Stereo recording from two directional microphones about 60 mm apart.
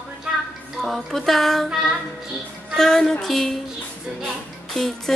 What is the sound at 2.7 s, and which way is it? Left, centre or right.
Speech, centre.